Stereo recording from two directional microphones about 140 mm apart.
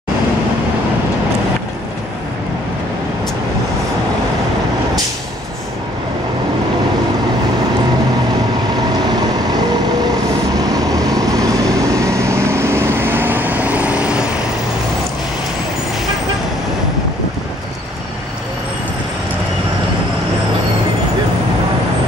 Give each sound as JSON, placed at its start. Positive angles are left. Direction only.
{"t": 10.7, "sound": "vehicle", "side_deg": -25}